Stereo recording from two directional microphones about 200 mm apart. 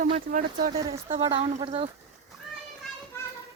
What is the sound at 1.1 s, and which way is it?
Speech, 25° right (ahead or behind).